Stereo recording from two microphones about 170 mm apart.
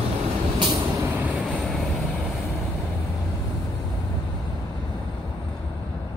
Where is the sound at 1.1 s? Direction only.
5° right (ahead or behind).